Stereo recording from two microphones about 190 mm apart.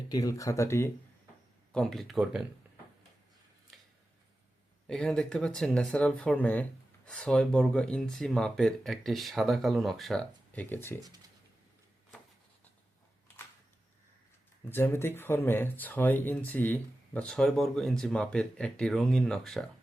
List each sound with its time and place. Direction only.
0.1 s speech: 20° left (ahead or behind)
1.7 s speech: centre (ahead or behind)
4.9 s speech: 5° left (ahead or behind)
14.7 s speech: 10° left (ahead or behind)